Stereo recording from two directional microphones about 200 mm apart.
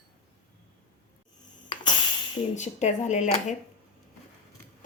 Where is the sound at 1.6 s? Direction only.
25° left (ahead or behind).